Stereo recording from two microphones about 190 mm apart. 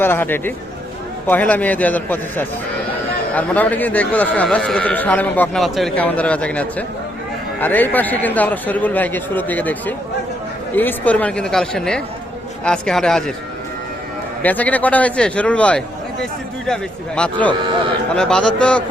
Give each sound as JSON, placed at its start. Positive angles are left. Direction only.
{"t": 0.0, "sound": "speech", "side_deg": 10}
{"t": 14.4, "sound": "speech", "side_deg": 10}
{"t": 17.6, "sound": "speech", "side_deg": -25}
{"t": 18.1, "sound": "speech", "side_deg": 5}